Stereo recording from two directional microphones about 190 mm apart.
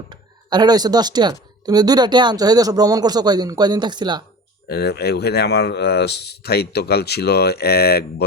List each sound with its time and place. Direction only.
0.1 s speech: 20° right (ahead or behind)
4.7 s speech: 60° left (ahead or behind)